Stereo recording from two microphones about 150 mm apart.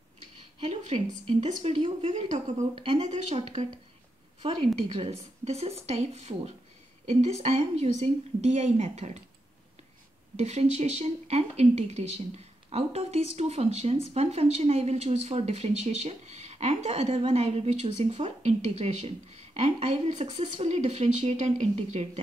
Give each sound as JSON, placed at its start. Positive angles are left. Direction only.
{"t": 0.9, "sound": "speech", "side_deg": -40}
{"t": 4.7, "sound": "speech", "side_deg": -40}
{"t": 10.3, "sound": "speech", "side_deg": -45}